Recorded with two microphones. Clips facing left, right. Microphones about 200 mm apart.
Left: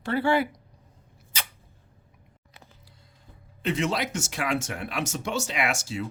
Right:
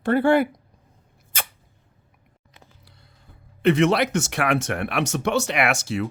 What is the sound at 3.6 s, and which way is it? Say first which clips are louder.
Speech: right 9 dB; 65° right (ahead or behind).